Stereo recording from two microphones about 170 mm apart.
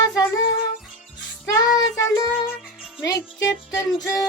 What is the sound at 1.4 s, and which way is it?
Child singing, 20° left (ahead or behind).